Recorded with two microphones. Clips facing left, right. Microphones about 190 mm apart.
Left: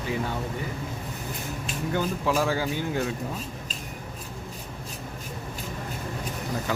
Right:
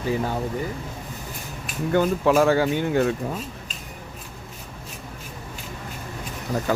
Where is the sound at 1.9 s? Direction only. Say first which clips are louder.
Right 7 dB; 60° right (ahead or behind).